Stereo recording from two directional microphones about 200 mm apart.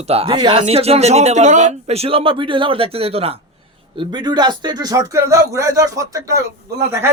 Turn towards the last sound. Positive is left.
turn(degrees=-15)  # may be behind; listen again after turning